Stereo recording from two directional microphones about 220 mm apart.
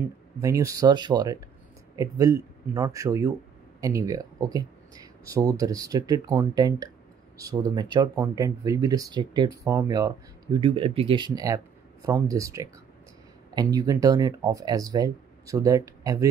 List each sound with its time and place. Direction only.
0.4 s speech: 15° right (ahead or behind)